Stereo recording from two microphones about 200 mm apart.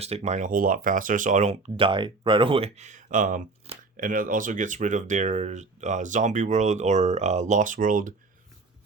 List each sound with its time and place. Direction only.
0.0 s speech: 30° right (ahead or behind)